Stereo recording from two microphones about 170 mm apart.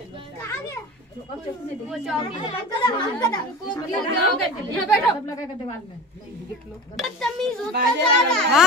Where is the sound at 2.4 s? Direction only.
25° left (ahead or behind).